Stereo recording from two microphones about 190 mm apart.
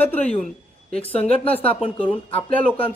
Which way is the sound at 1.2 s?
30° left (ahead or behind).